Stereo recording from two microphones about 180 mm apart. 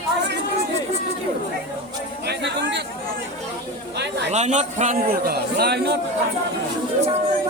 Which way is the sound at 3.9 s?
70° right (ahead or behind).